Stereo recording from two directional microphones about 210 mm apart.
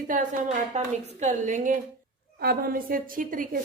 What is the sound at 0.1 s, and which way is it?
A woman's voice, 40° right (ahead or behind).